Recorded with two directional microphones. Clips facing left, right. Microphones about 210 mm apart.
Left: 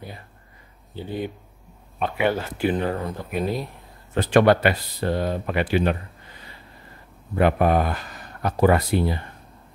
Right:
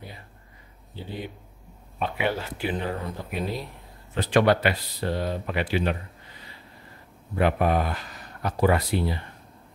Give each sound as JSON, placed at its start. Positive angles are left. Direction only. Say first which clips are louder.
{"t": 2.1, "sound": "speech", "louder": "left 6 dB", "side_deg": 50}
{"t": 7.3, "sound": "speech", "louder": "left 4 dB", "side_deg": 50}